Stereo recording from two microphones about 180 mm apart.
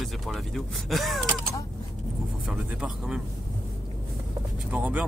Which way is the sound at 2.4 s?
5° right (ahead or behind).